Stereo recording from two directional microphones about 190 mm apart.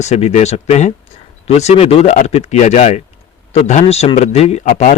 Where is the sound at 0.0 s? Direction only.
35° left (ahead or behind).